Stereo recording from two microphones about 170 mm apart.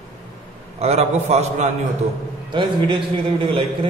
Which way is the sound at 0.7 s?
40° right (ahead or behind).